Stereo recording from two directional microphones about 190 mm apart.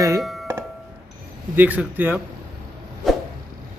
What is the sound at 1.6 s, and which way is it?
Speech, 10° right (ahead or behind).